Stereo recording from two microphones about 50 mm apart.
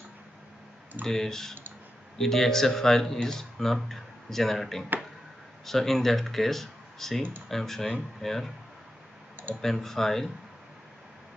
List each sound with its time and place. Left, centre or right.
1.0 s speech: centre
9.6 s speech: centre